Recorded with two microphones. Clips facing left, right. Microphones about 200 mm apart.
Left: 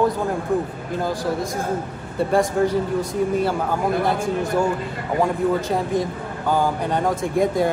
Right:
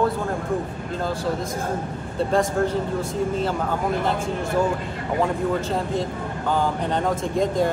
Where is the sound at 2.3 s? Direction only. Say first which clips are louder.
Left 3 dB; 15° left (ahead or behind).